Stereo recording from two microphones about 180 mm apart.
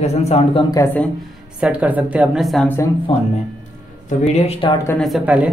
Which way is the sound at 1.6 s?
5° right (ahead or behind).